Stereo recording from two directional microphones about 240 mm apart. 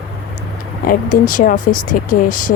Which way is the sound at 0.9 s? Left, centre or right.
Left.